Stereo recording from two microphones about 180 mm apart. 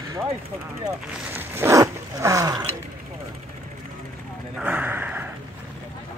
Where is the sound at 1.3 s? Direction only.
15° right (ahead or behind).